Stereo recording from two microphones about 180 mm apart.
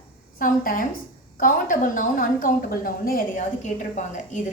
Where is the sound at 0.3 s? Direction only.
50° left (ahead or behind).